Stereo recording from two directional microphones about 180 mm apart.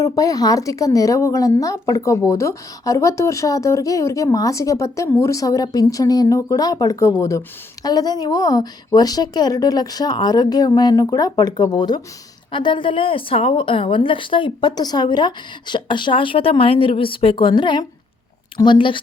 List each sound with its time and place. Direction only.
0.0 s a woman's voice: 20° left (ahead or behind)